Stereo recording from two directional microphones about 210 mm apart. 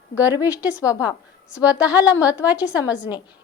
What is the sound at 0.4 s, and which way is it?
Speech, 5° right (ahead or behind).